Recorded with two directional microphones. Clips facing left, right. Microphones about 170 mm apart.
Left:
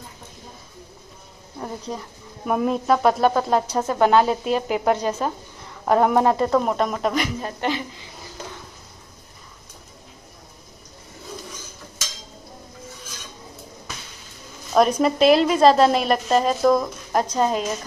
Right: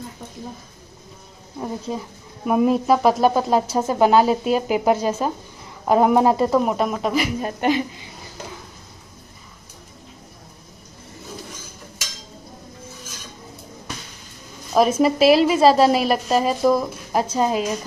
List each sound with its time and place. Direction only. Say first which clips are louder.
1.6 s a woman's voice: right 3 dB; 5° right (ahead or behind)
7.4 s a woman's voice: right 5 dB; 15° right (ahead or behind)
14.7 s a woman's voice: right 1 dB; 5° right (ahead or behind)